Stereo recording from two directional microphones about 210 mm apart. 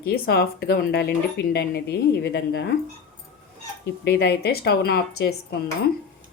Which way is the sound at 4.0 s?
50° left (ahead or behind).